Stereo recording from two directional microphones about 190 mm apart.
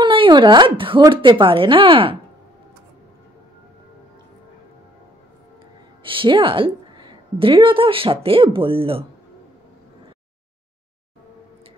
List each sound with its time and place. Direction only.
0.0 s a woman's voice: 25° right (ahead or behind)
6.0 s a woman's voice: 25° right (ahead or behind)